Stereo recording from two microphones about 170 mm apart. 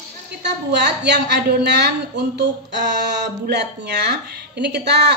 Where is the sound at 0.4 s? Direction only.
85° right.